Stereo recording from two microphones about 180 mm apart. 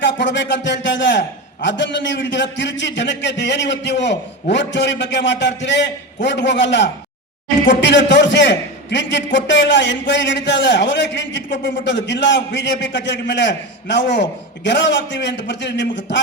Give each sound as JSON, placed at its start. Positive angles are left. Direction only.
{"t": 0.0, "sound": "a man's voice", "side_deg": 80}